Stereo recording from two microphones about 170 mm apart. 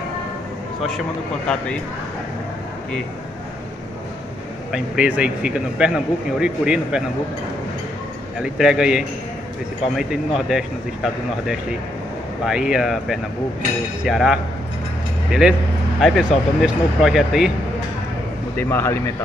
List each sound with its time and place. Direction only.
4.7 s speech: 5° right (ahead or behind)
8.4 s speech: 5° right (ahead or behind)
15.4 s speech: 5° right (ahead or behind)
18.6 s speech: 15° left (ahead or behind)